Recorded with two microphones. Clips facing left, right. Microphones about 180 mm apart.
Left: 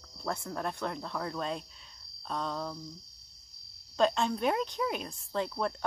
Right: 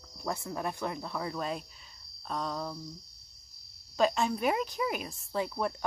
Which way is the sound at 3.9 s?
5° right (ahead or behind).